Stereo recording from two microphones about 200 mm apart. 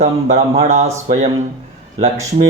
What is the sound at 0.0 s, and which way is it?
Speech, 30° right (ahead or behind).